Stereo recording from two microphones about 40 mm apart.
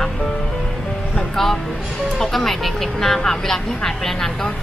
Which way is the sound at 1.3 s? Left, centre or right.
Centre.